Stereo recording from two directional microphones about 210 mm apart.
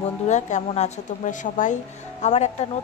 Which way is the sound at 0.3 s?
35° left (ahead or behind).